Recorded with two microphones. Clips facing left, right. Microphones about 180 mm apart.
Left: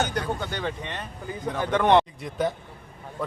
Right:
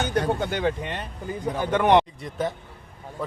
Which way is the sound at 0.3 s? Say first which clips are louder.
Right 5 dB; 15° right (ahead or behind).